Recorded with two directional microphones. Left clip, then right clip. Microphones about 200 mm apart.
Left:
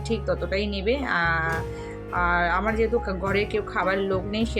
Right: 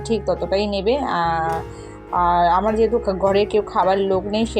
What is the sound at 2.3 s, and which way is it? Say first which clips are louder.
Speech: right 7 dB; 10° right (ahead or behind).